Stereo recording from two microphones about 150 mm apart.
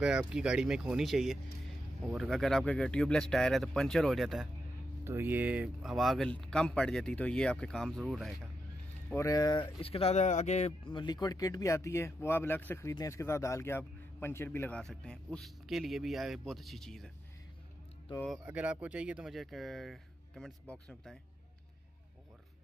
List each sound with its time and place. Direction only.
0.0 s a man's voice: 5° right (ahead or behind)
5.0 s a man's voice: 15° right (ahead or behind)
9.1 s speech: 20° left (ahead or behind); by 10.7 s 50° left (ahead or behind)
10.9 s a man's voice: 30° left (ahead or behind); by 17.1 s 5° left (ahead or behind)
18.4 s a man's voice: 10° right (ahead or behind)